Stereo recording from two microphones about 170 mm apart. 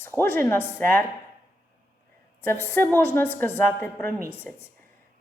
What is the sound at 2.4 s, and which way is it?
A woman's voice, 15° left (ahead or behind).